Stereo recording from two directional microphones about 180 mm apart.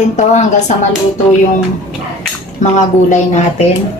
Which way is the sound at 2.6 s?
40° left (ahead or behind).